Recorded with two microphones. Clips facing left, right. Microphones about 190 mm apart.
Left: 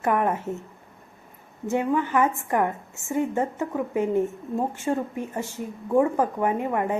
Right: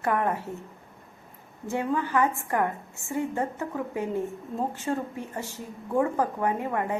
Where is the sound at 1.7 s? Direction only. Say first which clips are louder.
Left 4 dB; 20° left (ahead or behind).